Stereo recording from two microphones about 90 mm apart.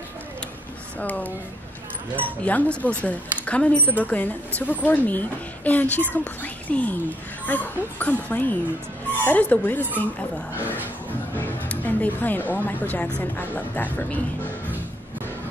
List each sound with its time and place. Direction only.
0.9 s speech: 20° left (ahead or behind)